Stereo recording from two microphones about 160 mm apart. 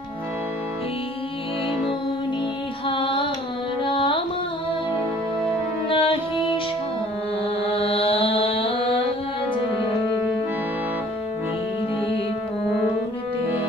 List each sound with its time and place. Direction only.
2.9 s carnatic music: 30° left (ahead or behind)
3.8 s music: 30° left (ahead or behind)
5.9 s music: 35° left (ahead or behind)
7.6 s music: 35° left (ahead or behind)